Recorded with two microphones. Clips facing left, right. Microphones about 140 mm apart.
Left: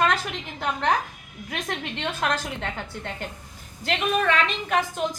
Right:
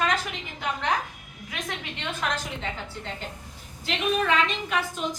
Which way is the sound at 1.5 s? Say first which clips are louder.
Left 4 dB; 50° left (ahead or behind).